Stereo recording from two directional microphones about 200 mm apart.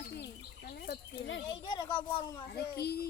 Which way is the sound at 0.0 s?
55° left (ahead or behind).